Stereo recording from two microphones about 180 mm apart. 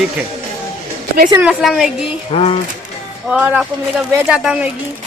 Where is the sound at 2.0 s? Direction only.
30° left (ahead or behind).